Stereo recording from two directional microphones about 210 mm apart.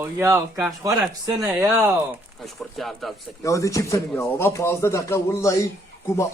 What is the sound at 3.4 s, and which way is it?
Speech, 15° left (ahead or behind).